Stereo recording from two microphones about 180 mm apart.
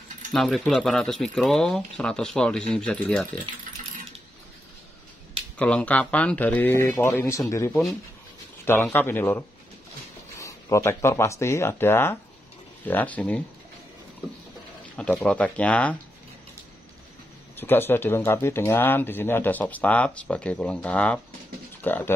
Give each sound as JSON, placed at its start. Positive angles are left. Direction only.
{"t": 0.3, "sound": "speech", "side_deg": 0}
{"t": 5.6, "sound": "speech", "side_deg": 5}
{"t": 15.0, "sound": "speech", "side_deg": 5}
{"t": 17.6, "sound": "speech", "side_deg": 10}